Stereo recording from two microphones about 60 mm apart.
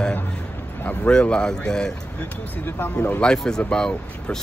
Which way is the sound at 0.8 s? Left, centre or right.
Left.